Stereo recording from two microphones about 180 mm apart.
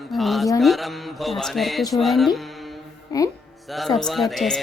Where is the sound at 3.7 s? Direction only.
Centre (ahead or behind).